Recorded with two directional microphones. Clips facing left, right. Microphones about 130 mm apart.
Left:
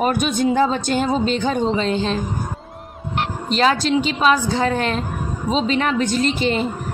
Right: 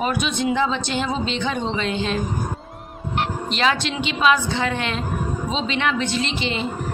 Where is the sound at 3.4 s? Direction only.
40° left (ahead or behind).